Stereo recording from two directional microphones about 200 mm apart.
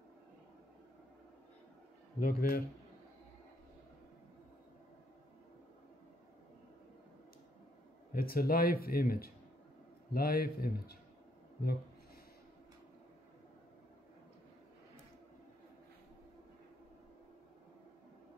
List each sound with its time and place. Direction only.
2.1 s speech: 45° left (ahead or behind)
8.1 s speech: 45° left (ahead or behind)